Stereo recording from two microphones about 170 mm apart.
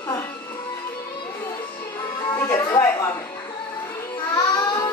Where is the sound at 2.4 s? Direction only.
15° left (ahead or behind).